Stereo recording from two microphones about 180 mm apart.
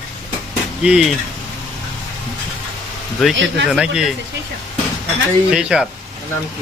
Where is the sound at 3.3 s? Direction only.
90° right.